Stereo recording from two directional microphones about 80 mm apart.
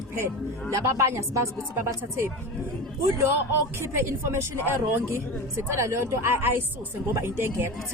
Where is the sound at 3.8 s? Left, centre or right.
Right.